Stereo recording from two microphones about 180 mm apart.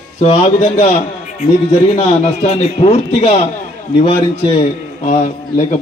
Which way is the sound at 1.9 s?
35° left (ahead or behind).